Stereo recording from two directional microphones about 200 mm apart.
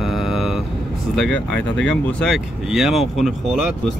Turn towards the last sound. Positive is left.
turn(degrees=0)  # may be behind; listen again after turning